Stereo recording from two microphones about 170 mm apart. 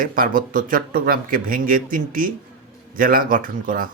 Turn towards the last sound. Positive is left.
turn(degrees=-55)  # may be behind; listen again after turning